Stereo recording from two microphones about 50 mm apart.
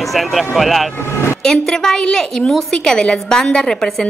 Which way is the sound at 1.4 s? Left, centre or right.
Centre.